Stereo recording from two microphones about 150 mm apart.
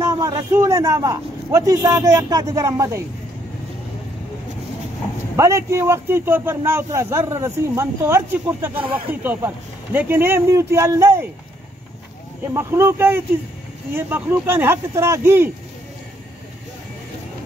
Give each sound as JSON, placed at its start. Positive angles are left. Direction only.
{"t": 0.0, "sound": "a man's voice", "side_deg": -25}
{"t": 5.3, "sound": "speech", "side_deg": -20}
{"t": 12.5, "sound": "speech", "side_deg": -15}